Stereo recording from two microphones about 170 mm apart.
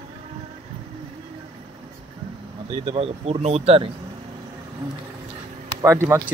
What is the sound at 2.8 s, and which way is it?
Speech, 35° right (ahead or behind).